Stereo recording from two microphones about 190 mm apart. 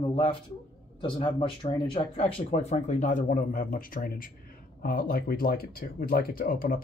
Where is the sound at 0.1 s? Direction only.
30° left (ahead or behind).